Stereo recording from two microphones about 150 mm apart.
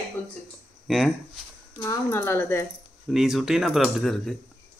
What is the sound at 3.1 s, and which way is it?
Speech, 5° right (ahead or behind).